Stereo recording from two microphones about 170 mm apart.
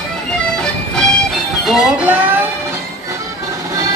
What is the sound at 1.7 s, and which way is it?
Music, 5° right (ahead or behind).